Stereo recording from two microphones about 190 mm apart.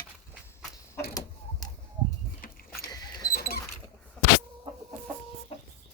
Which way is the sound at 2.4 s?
50° left (ahead or behind).